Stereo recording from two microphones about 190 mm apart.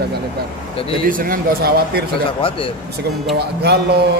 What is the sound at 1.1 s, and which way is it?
Speech, 50° right (ahead or behind).